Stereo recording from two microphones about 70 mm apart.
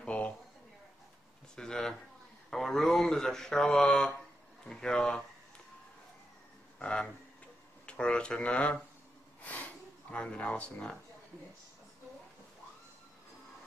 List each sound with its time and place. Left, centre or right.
0.0 s a sound: centre
1.5 s a sound: centre
2.5 s speech: centre
6.8 s speech: centre
9.4 s snort: left
10.1 s speech: centre